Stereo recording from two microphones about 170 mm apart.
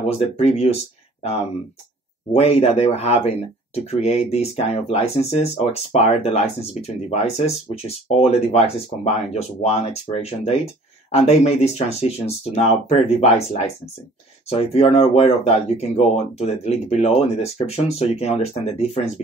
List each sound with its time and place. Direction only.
0.0 s speech: 40° left (ahead or behind)